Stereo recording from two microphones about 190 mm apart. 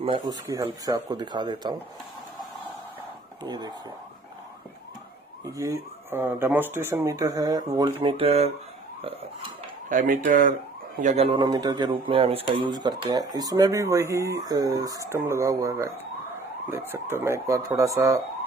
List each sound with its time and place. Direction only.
0.0 s speech: 25° right (ahead or behind)
3.4 s speech: 25° right (ahead or behind)
5.4 s speech: 15° right (ahead or behind); by 8.5 s 30° right (ahead or behind)
9.8 s speech: 45° right (ahead or behind); by 18.2 s 15° right (ahead or behind)